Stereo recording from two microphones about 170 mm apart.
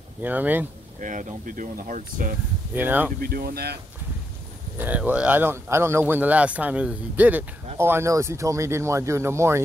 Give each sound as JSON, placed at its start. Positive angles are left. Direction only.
{"t": 0.2, "sound": "speech", "side_deg": -10}
{"t": 1.0, "sound": "speech", "side_deg": -50}
{"t": 2.7, "sound": "speech", "side_deg": -10}
{"t": 3.2, "sound": "speech", "side_deg": -65}
{"t": 4.7, "sound": "speech", "side_deg": -10}